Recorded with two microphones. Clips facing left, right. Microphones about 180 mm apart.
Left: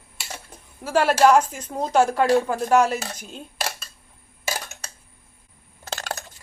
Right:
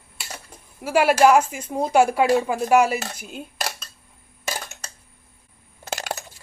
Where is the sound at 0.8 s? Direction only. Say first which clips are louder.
Right 1 dB; 10° right (ahead or behind).